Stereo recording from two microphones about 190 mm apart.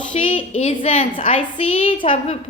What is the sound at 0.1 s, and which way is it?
A woman's voice, 30° left (ahead or behind).